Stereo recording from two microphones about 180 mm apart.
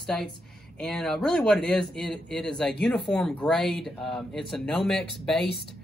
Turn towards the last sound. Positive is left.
turn(degrees=0)  # may be behind; listen again after turning